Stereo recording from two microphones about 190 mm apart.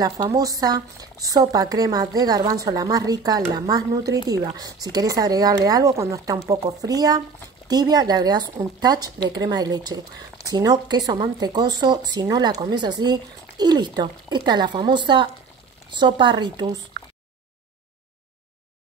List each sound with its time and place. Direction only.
0.0 s speech: 20° right (ahead or behind)